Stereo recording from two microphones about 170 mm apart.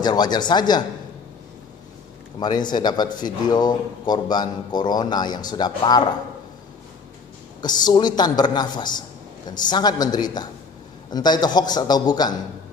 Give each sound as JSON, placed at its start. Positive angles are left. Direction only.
{"t": 0.0, "sound": "speech", "side_deg": 25}
{"t": 2.4, "sound": "speech", "side_deg": 25}
{"t": 7.6, "sound": "speech", "side_deg": 25}